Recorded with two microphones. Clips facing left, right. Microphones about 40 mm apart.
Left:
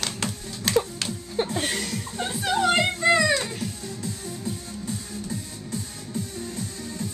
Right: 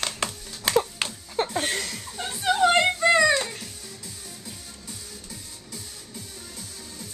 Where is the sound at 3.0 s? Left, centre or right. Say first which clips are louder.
Even; centre.